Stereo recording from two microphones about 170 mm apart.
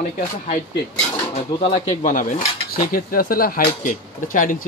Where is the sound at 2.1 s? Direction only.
55° left (ahead or behind).